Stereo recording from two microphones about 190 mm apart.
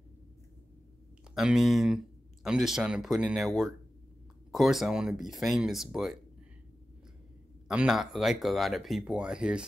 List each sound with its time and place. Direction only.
1.3 s speech: centre (ahead or behind)
7.6 s speech: 5° right (ahead or behind)